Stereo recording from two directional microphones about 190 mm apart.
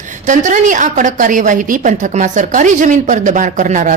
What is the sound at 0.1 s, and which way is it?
A woman's voice, 40° right (ahead or behind).